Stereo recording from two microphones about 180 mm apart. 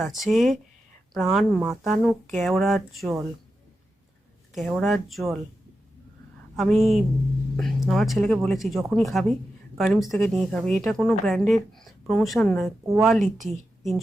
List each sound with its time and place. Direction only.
0.0 s speech: centre (ahead or behind)
4.5 s speech: centre (ahead or behind)
6.6 s speech: centre (ahead or behind)